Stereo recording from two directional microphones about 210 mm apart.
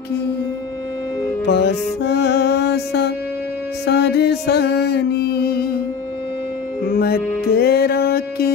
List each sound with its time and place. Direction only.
1.4 s music: 55° left (ahead or behind)
6.9 s music: 45° left (ahead or behind)